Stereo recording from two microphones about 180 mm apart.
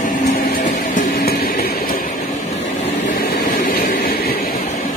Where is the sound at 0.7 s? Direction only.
45° left (ahead or behind).